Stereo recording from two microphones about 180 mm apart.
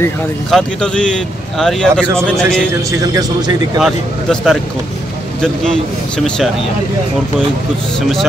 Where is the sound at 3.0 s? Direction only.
20° right (ahead or behind).